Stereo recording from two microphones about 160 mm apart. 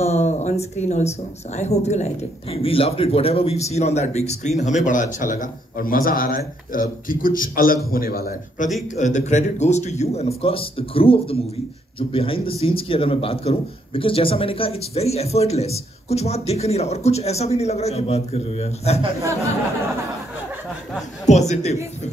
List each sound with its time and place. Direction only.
0.0 s a man's voice: 45° left (ahead or behind); by 8.6 s 70° left (ahead or behind)
8.9 s a man's voice: 50° left (ahead or behind)
21.3 s speech: 45° left (ahead or behind)